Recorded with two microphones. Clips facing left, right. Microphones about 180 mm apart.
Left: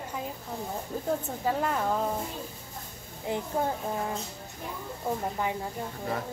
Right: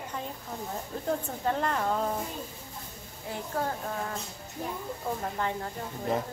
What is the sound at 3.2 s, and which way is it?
Speech, 20° left (ahead or behind).